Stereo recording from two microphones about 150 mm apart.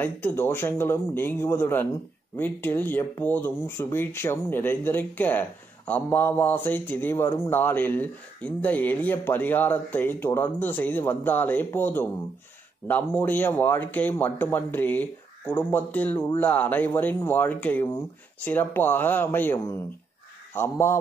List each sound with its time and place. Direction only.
0.0 s a man's voice: 15° left (ahead or behind)